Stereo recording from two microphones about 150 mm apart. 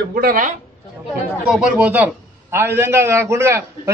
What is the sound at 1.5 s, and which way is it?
A man's voice, 5° right (ahead or behind).